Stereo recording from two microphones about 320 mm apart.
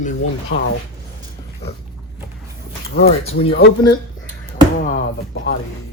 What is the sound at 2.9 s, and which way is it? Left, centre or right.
Speech, left.